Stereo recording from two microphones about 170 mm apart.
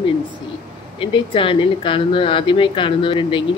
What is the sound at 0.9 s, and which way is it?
Speech, 30° left (ahead or behind).